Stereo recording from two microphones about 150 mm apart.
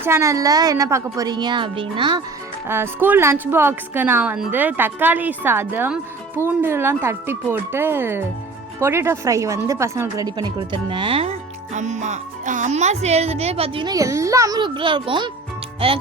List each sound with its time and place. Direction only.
0.0 s a woman's voice: 20° right (ahead or behind)
2.6 s a woman's voice: 15° right (ahead or behind); by 13.9 s 35° right (ahead or behind)
13.9 s a woman's voice: 20° right (ahead or behind); by 16.0 s 35° right (ahead or behind)